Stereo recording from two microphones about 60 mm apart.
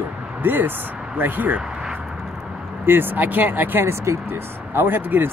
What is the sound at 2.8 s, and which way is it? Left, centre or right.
Speech, right.